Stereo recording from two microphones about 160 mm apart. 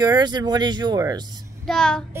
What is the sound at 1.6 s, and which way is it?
Speech, 5° left (ahead or behind).